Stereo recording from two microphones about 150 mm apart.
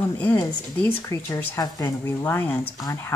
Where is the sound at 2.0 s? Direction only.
15° left (ahead or behind).